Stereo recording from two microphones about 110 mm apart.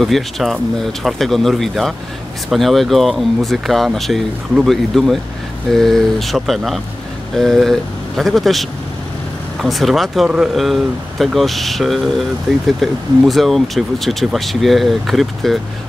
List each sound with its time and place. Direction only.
0.0 s speech: centre (ahead or behind)